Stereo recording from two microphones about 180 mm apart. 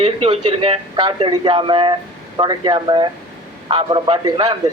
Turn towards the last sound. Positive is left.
turn(degrees=-25)  # may be behind; listen again after turning